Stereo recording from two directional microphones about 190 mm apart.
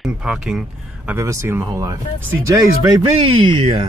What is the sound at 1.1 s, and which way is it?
Speech, 15° right (ahead or behind).